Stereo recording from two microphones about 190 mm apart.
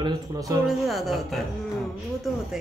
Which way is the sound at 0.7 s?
Centre (ahead or behind).